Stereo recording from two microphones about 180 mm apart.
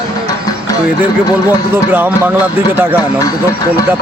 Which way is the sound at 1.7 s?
10° right (ahead or behind).